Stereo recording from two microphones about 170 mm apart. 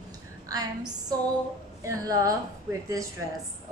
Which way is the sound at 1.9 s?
20° right (ahead or behind).